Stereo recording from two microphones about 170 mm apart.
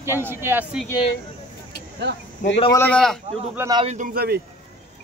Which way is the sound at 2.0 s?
75° right (ahead or behind).